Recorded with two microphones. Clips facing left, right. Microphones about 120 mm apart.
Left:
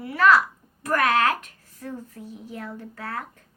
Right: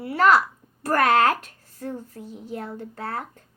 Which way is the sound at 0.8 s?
35° right (ahead or behind).